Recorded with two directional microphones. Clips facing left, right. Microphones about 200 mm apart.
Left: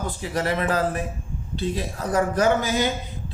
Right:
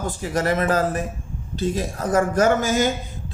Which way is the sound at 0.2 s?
45° right (ahead or behind).